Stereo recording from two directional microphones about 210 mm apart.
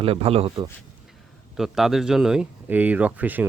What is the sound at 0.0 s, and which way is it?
Speech, 30° right (ahead or behind).